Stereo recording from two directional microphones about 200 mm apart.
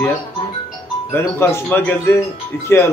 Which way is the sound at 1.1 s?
10° left (ahead or behind).